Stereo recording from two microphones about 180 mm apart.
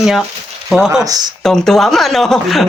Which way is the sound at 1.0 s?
20° right (ahead or behind).